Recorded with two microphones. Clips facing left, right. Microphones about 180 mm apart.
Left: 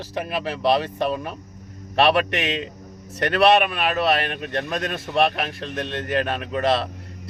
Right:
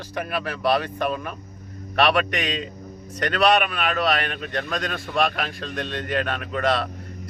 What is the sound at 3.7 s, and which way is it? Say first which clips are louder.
Speech: left 2 dB; 25° left (ahead or behind).